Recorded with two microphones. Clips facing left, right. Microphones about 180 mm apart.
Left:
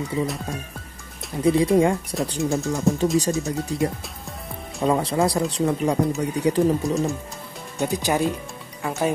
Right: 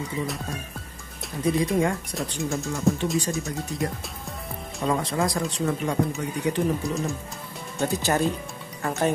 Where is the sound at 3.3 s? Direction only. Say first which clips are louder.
Left 5 dB; 20° left (ahead or behind).